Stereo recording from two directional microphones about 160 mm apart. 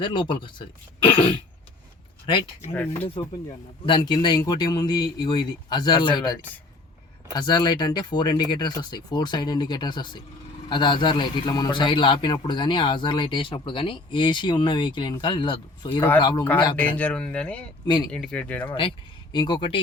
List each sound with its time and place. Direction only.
0.0 s speech: 30° left (ahead or behind)
2.2 s speech: 30° left (ahead or behind)
2.7 s speech: 10° left (ahead or behind)
3.8 s a man's voice: 25° left (ahead or behind)
7.3 s a man's voice: 25° left (ahead or behind)
17.0 s speech: 5° left (ahead or behind)
17.8 s a man's voice: 25° left (ahead or behind)
18.1 s speech: 5° left (ahead or behind)
19.3 s a man's voice: 25° left (ahead or behind)